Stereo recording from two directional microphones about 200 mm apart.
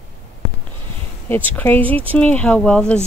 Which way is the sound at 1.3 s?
10° left (ahead or behind).